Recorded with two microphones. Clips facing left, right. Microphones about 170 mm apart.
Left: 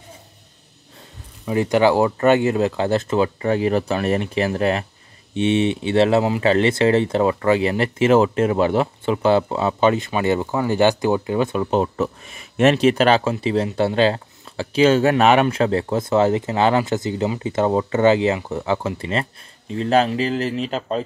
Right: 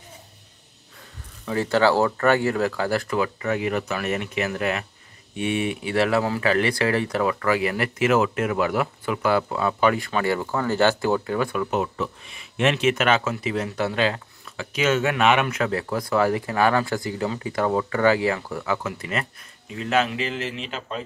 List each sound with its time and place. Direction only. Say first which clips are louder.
1.4 s speech: left 4 dB; 20° left (ahead or behind); by 21.0 s 40° left (ahead or behind)